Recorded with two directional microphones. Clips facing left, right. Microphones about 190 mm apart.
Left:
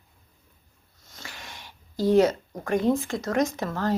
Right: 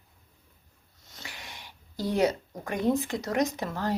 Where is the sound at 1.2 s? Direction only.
15° right (ahead or behind).